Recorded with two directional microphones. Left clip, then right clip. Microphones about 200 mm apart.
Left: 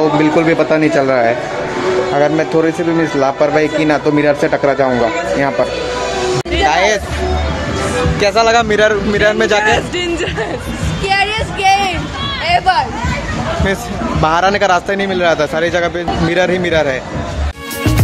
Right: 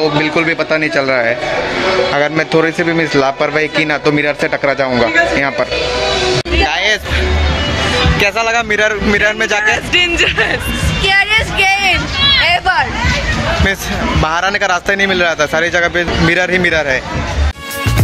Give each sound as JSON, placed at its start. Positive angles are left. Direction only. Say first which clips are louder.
{"t": 0.0, "sound": "a man's voice", "louder": "left 1 dB", "side_deg": 10}
{"t": 6.7, "sound": "music", "louder": "left 4 dB", "side_deg": 5}
{"t": 8.2, "sound": "speech", "louder": "left 7 dB", "side_deg": -5}
{"t": 9.9, "sound": "speech", "louder": "right 6 dB", "side_deg": 25}
{"t": 11.1, "sound": "a sound", "louder": "right 3 dB", "side_deg": 0}
{"t": 12.4, "sound": "speech", "louder": "even", "side_deg": 0}
{"t": 14.2, "sound": "speech", "louder": "left 4 dB", "side_deg": 0}